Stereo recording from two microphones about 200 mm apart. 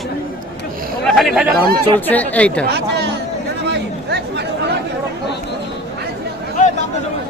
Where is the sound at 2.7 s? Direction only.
55° right (ahead or behind).